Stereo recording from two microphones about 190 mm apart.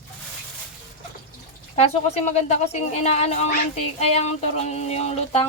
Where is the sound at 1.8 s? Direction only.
35° left (ahead or behind).